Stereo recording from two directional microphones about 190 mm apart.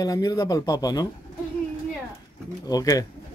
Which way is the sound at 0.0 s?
20° left (ahead or behind).